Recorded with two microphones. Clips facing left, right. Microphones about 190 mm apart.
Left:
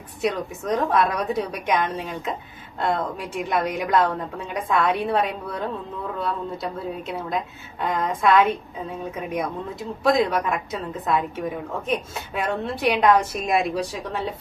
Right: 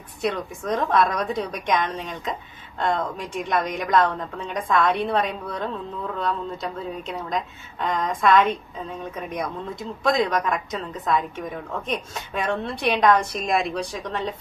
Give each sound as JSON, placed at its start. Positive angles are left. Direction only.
{"t": 0.2, "sound": "a woman's voice", "side_deg": 5}